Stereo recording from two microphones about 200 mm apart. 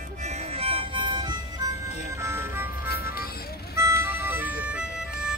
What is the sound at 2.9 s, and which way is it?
Music, 45° left (ahead or behind).